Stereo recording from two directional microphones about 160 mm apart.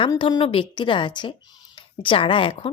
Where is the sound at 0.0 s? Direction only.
30° left (ahead or behind).